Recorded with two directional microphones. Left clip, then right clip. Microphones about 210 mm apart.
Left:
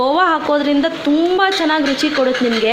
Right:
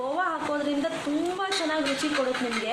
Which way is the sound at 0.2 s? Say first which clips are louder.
Left 13 dB; 35° left (ahead or behind).